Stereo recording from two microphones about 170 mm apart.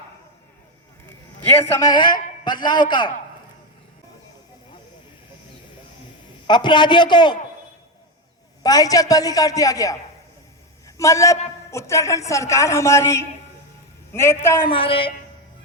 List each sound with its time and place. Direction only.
1.8 s a woman's voice: 25° left (ahead or behind)
6.5 s a woman's voice: 25° left (ahead or behind)
8.6 s a woman's voice: 20° left (ahead or behind)
14.7 s a woman's voice: 30° left (ahead or behind)